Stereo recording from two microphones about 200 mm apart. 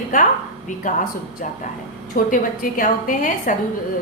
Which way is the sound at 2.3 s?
40° left (ahead or behind).